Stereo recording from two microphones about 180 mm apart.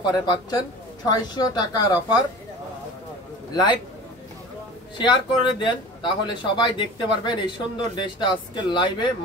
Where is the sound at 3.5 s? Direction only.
25° left (ahead or behind).